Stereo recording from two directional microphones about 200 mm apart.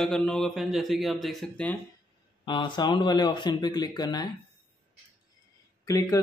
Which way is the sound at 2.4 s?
25° left (ahead or behind).